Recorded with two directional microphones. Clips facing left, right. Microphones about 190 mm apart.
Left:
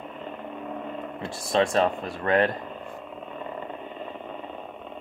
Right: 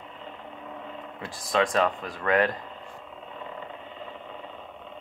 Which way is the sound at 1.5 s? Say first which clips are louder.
Left 2 dB; 25° left (ahead or behind).